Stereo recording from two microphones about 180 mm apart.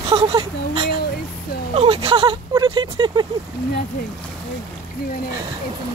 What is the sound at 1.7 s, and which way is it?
Speech, 30° right (ahead or behind).